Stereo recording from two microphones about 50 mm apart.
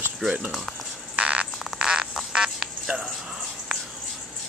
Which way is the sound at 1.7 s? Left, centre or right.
Centre.